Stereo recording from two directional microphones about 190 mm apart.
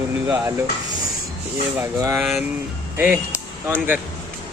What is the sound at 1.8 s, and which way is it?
Speech, 15° right (ahead or behind).